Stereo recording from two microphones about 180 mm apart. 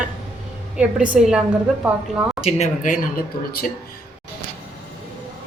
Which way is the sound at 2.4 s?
40° left (ahead or behind).